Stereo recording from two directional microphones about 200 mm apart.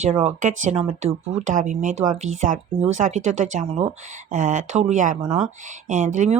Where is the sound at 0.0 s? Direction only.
35° right (ahead or behind).